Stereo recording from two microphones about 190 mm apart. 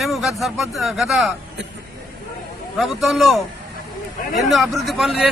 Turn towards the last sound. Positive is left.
turn(degrees=0)  # may be behind; listen again after turning